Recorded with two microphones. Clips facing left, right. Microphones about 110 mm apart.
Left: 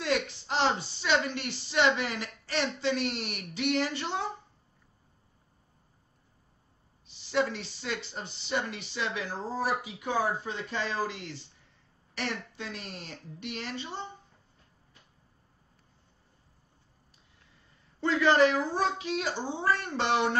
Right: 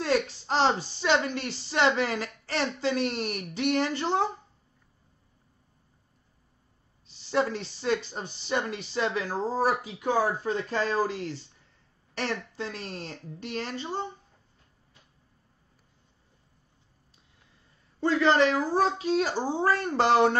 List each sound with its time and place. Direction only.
0.0 s a sound: 40° right (ahead or behind)
1.0 s a woman's voice: 40° right (ahead or behind)
7.1 s speech: 40° right (ahead or behind)
18.0 s speech: 30° right (ahead or behind)